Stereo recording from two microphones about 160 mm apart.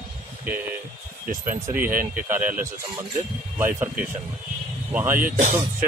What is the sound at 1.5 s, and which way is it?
Speech, 10° right (ahead or behind).